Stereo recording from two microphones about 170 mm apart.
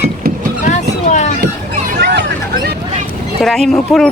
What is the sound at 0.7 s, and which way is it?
Vehicle, 45° left (ahead or behind).